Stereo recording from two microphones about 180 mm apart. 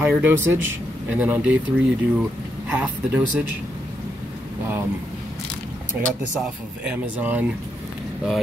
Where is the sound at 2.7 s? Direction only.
10° right (ahead or behind).